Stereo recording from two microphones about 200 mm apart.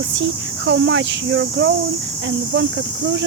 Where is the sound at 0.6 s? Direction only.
65° right (ahead or behind).